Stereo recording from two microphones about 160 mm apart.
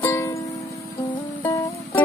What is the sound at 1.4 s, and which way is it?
Music, 20° left (ahead or behind).